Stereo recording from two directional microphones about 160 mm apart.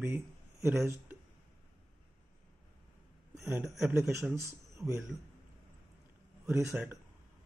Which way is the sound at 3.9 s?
15° right (ahead or behind).